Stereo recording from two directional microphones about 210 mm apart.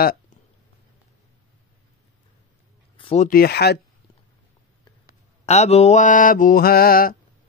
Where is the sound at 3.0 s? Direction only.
25° left (ahead or behind).